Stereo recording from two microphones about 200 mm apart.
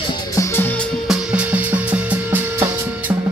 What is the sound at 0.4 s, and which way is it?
Music, 10° left (ahead or behind).